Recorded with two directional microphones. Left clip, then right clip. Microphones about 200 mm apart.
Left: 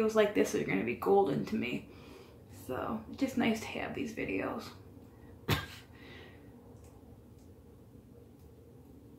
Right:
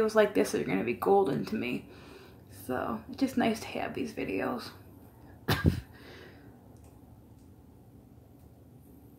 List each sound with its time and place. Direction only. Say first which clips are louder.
0.0 s speech: right 3 dB; 25° right (ahead or behind)